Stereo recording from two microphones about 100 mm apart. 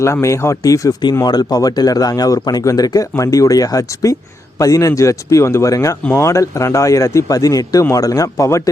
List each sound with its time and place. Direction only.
0.0 s speech: 30° left (ahead or behind)